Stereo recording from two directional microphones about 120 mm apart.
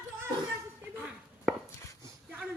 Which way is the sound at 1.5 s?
5° right (ahead or behind).